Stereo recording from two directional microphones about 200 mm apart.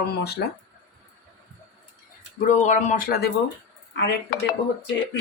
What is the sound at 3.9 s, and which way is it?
Speech, 55° left (ahead or behind).